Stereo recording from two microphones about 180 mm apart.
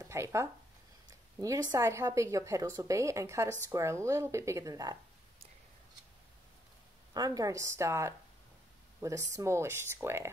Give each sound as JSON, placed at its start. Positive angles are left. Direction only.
{"t": 0.0, "sound": "a woman's voice", "side_deg": -15}
{"t": 7.2, "sound": "a woman's voice", "side_deg": -20}